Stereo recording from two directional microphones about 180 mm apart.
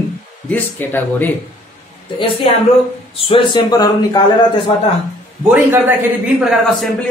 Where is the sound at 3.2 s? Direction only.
25° left (ahead or behind).